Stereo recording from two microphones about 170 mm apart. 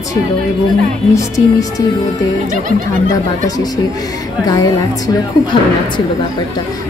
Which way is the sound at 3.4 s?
20° left (ahead or behind).